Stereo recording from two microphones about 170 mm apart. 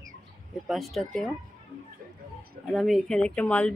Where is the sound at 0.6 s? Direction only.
Centre (ahead or behind).